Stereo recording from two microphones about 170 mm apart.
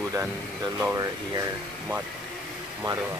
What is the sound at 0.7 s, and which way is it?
Speech, 15° right (ahead or behind).